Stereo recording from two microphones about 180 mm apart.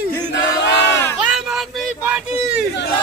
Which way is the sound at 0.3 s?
80° left.